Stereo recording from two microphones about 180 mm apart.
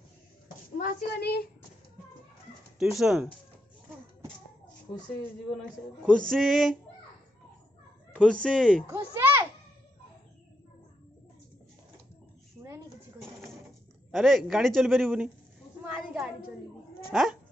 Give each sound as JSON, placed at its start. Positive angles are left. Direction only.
{"t": 0.7, "sound": "a child's voice", "side_deg": 65}
{"t": 2.8, "sound": "a man's voice", "side_deg": 0}
{"t": 6.1, "sound": "a man's voice", "side_deg": 0}
{"t": 8.1, "sound": "a man's voice", "side_deg": 5}
{"t": 8.8, "sound": "a child's voice", "side_deg": -15}
{"t": 12.6, "sound": "a sound", "side_deg": -15}
{"t": 14.1, "sound": "a man's voice", "side_deg": 0}
{"t": 15.8, "sound": "a sound", "side_deg": -10}
{"t": 17.1, "sound": "speech", "side_deg": 0}